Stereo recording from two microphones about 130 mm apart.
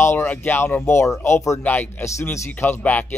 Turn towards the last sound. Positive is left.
turn(degrees=15)  # may be behind; listen again after turning